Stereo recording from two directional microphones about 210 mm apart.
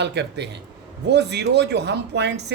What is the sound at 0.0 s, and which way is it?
A man's voice, 55° right (ahead or behind).